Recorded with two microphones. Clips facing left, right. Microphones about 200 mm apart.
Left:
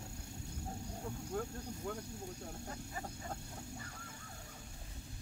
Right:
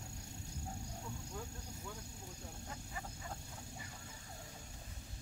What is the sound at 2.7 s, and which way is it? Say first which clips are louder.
Vehicle: left 3 dB; 40° left (ahead or behind).